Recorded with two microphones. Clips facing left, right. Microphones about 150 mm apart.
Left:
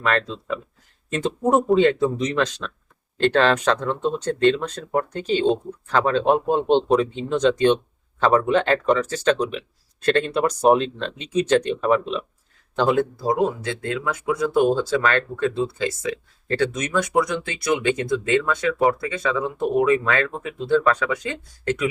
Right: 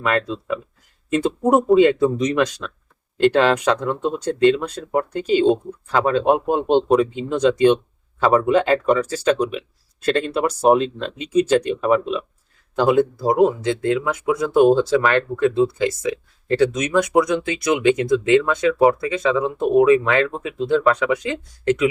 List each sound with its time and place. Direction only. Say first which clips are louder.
0.0 s speech: right 2 dB; 10° right (ahead or behind)
13.2 s speech: right 5 dB; 20° right (ahead or behind)